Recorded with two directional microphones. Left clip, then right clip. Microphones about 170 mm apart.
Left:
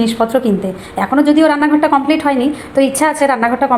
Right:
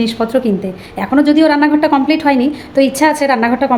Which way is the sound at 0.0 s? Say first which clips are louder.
Left 1 dB; 15° right (ahead or behind).